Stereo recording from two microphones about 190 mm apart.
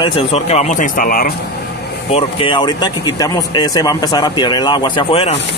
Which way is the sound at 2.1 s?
30° left (ahead or behind).